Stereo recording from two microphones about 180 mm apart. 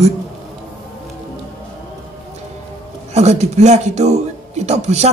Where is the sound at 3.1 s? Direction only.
40° right (ahead or behind).